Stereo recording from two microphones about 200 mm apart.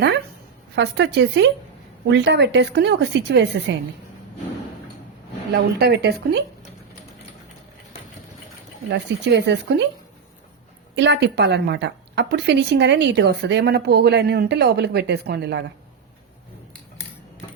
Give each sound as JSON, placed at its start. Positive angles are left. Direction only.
{"t": 0.8, "sound": "a woman's voice", "side_deg": -60}
{"t": 5.5, "sound": "a woman's voice", "side_deg": -60}
{"t": 8.9, "sound": "a woman's voice", "side_deg": -60}
{"t": 10.9, "sound": "a woman's voice", "side_deg": -60}